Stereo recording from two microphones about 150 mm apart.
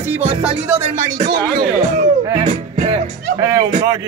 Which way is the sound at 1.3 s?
75° right (ahead or behind).